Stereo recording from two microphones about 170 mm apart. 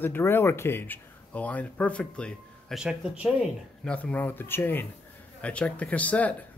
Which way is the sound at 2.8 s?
5° right (ahead or behind).